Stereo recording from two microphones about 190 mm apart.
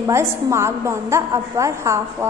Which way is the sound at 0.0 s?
15° right (ahead or behind).